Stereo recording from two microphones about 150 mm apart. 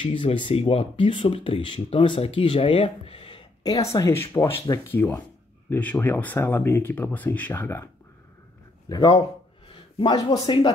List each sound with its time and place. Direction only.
0.0 s speech: 35° left (ahead or behind)
3.9 s speech: 15° left (ahead or behind)
8.8 s a man's voice: 25° left (ahead or behind)
9.7 s a sound: 30° left (ahead or behind)
10.4 s speech: 30° left (ahead or behind)